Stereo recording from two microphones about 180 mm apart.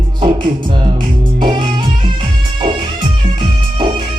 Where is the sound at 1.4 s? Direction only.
25° right (ahead or behind).